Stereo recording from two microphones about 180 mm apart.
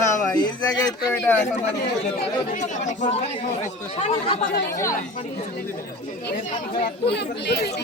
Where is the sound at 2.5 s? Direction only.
45° left (ahead or behind).